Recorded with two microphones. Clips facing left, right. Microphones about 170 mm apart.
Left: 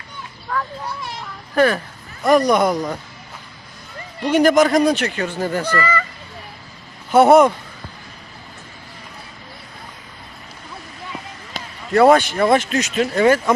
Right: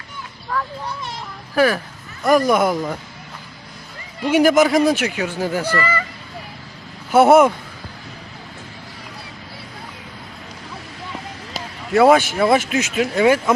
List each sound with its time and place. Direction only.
1.5 s speech: 5° right (ahead or behind)
4.2 s speech: 10° right (ahead or behind)
7.1 s speech: 5° right (ahead or behind)
11.5 s basketball bounce: centre (ahead or behind)
12.3 s speech: 5° right (ahead or behind)